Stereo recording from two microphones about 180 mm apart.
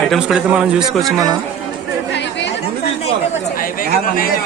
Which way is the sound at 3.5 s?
50° left (ahead or behind).